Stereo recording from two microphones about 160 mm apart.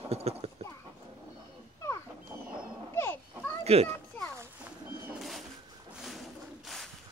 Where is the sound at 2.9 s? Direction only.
15° left (ahead or behind).